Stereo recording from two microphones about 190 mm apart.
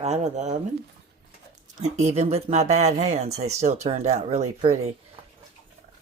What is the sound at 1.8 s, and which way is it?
Speech, 35° right (ahead or behind).